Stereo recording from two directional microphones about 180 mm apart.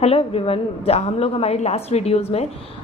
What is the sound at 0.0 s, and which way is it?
A woman's voice, 30° left (ahead or behind).